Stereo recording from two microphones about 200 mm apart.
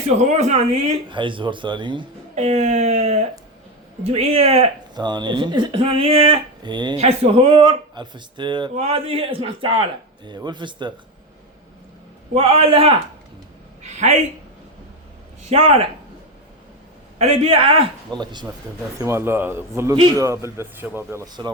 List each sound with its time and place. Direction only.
0.2 s speech: 35° right (ahead or behind)
2.3 s speech: 35° right (ahead or behind)
12.3 s a woman's voice: 30° right (ahead or behind)
15.4 s speech: 30° right (ahead or behind)
17.2 s a man's voice: 30° right (ahead or behind)